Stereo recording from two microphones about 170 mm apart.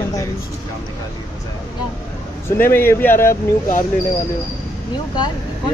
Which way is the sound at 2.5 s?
10° left (ahead or behind).